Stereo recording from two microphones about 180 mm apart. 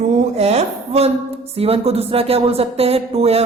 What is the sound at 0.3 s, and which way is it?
Speech, 35° right (ahead or behind).